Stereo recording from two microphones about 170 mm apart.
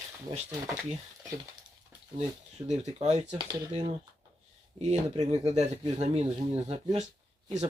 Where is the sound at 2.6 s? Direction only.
40° right (ahead or behind).